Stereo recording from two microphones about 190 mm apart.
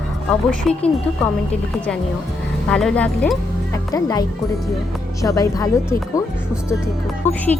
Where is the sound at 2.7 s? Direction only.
5° left (ahead or behind).